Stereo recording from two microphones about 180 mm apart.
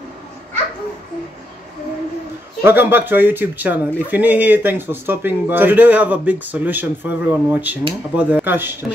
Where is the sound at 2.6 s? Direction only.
10° right (ahead or behind).